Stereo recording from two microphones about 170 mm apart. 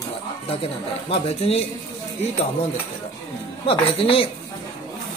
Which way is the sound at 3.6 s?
30° left (ahead or behind).